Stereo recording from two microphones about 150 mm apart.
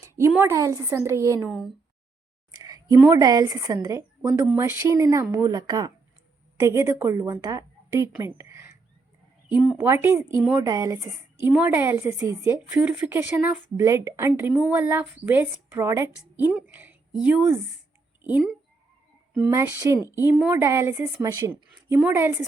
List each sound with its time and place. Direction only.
0.0 s speech: 15° right (ahead or behind)
1.4 s speech: 5° right (ahead or behind)
2.6 s a woman's voice: 25° right (ahead or behind)
9.7 s speech: 15° right (ahead or behind)
18.2 s a sound: 10° right (ahead or behind)
19.3 s speech: 20° right (ahead or behind)